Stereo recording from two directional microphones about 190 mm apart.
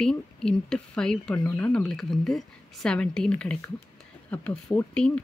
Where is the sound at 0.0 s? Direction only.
5° left (ahead or behind).